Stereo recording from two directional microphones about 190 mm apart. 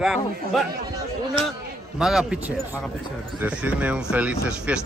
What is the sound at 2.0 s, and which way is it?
Speech, centre (ahead or behind).